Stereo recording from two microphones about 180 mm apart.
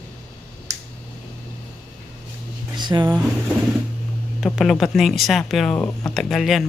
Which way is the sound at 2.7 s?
25° right (ahead or behind).